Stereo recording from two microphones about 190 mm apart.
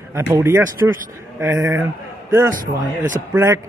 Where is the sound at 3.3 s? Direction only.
15° right (ahead or behind).